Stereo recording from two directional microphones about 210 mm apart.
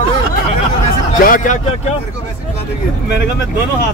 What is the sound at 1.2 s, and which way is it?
Speech, 40° left (ahead or behind).